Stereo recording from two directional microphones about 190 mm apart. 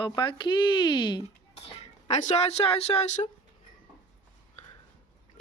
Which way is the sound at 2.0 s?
35° left (ahead or behind).